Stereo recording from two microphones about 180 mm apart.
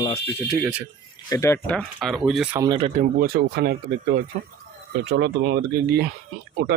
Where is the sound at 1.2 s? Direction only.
15° left (ahead or behind).